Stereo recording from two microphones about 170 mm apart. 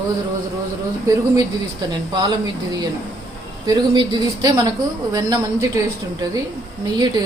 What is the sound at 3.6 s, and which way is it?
A woman's voice, 25° right (ahead or behind).